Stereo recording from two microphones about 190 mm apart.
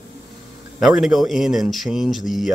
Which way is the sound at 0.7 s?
Centre (ahead or behind).